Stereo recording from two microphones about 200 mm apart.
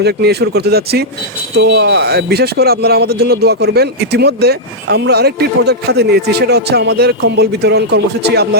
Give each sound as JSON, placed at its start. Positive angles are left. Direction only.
{"t": 0.0, "sound": "speech", "side_deg": -55}